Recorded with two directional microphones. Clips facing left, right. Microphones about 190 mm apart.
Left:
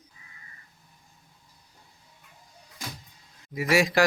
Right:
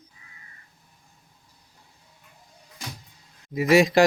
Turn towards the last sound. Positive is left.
turn(degrees=-20)  # may be behind; listen again after turning